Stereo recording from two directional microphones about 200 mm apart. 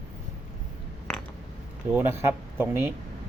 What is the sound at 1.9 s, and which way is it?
Speech, 10° right (ahead or behind).